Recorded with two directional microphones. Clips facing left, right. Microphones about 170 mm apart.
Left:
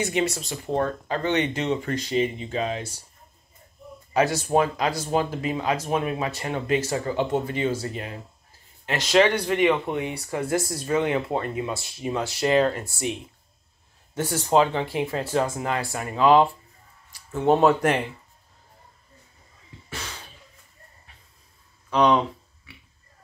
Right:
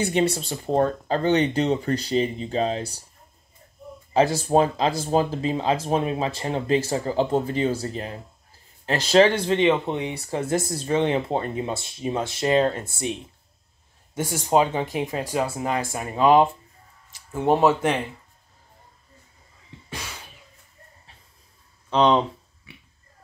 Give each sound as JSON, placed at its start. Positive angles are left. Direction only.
{"t": 0.0, "sound": "speech", "side_deg": -30}
{"t": 4.1, "sound": "speech", "side_deg": -30}
{"t": 14.1, "sound": "speech", "side_deg": -10}
{"t": 17.3, "sound": "speech", "side_deg": -10}
{"t": 19.9, "sound": "a sound", "side_deg": -10}
{"t": 21.9, "sound": "speech", "side_deg": -20}